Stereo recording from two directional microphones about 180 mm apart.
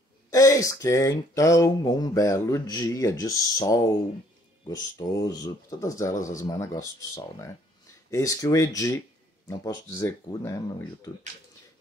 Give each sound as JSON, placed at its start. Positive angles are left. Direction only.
{"t": 0.3, "sound": "speech", "side_deg": 20}